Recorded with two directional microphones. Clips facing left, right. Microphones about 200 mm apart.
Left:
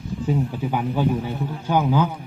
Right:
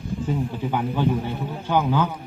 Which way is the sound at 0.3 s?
10° left (ahead or behind).